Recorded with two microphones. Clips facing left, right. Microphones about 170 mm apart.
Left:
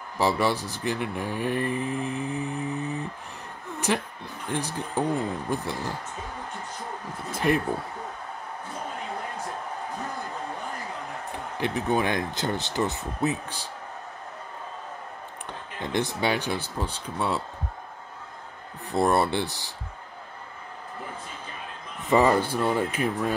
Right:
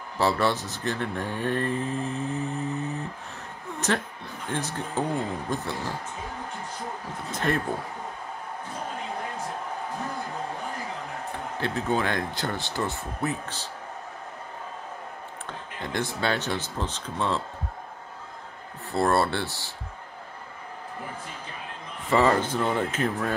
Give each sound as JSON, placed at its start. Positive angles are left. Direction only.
{"t": 0.2, "sound": "speech", "side_deg": 15}
{"t": 7.2, "sound": "speech", "side_deg": 10}
{"t": 11.6, "sound": "speech", "side_deg": 15}
{"t": 15.8, "sound": "speech", "side_deg": 20}
{"t": 18.9, "sound": "speech", "side_deg": 15}
{"t": 22.0, "sound": "speech", "side_deg": 15}